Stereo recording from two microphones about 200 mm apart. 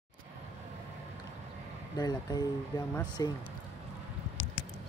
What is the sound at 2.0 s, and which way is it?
Speech, 20° left (ahead or behind).